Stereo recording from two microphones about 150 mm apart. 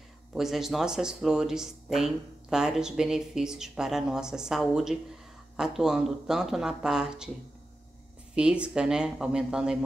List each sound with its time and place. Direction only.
0.3 s speech: centre (ahead or behind)
8.4 s speech: 5° right (ahead or behind)